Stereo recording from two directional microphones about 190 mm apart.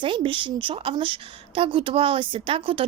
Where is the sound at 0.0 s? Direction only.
25° right (ahead or behind).